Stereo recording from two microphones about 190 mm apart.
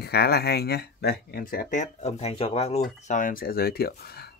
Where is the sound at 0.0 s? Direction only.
60° left (ahead or behind); by 2.8 s 35° left (ahead or behind).